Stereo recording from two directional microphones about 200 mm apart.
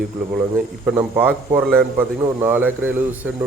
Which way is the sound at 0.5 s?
10° right (ahead or behind).